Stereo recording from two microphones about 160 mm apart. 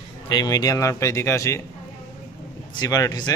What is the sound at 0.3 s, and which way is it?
Speech, 25° left (ahead or behind).